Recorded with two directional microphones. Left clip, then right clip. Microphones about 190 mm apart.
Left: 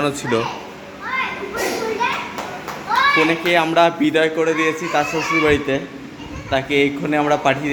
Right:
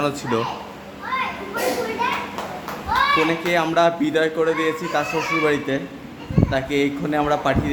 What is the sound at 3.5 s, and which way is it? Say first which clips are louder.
A man's voice: left 3 dB; centre (ahead or behind).